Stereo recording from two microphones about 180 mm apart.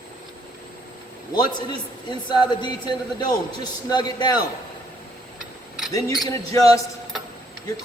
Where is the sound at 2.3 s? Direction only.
25° left (ahead or behind).